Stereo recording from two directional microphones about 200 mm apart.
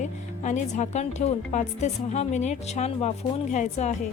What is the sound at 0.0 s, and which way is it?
A woman's voice, 35° left (ahead or behind).